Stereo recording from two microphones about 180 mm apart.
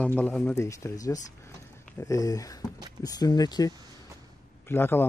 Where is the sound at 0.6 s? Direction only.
15° left (ahead or behind).